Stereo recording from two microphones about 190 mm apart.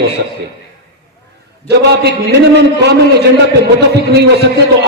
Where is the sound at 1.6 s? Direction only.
60° right (ahead or behind).